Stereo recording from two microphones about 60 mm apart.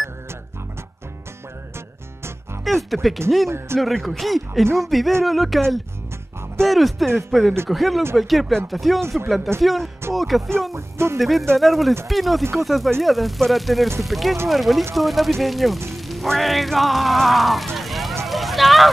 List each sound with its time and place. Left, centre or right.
2.6 s speech: centre
3.4 s music: right
3.8 s speech: centre
6.6 s speech: centre
10.7 s music: right
11.1 s speech: centre
15.9 s music: centre
18.2 s a sound: centre